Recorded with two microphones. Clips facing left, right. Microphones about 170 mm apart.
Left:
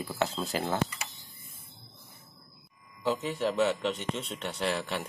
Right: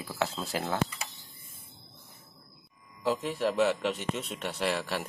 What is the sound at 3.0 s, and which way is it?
Speech, 5° right (ahead or behind).